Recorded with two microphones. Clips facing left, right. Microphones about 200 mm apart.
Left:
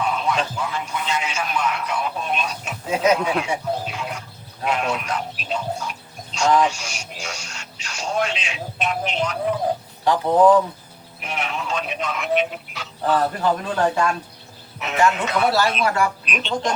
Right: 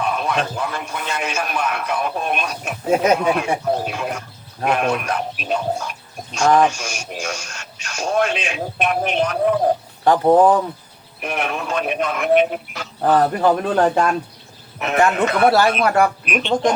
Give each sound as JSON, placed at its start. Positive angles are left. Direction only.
{"t": 0.0, "sound": "a man's voice", "side_deg": -55}
{"t": 14.8, "sound": "speech", "side_deg": -55}